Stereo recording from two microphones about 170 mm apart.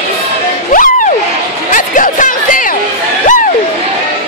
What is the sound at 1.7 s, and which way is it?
Music, 50° left (ahead or behind).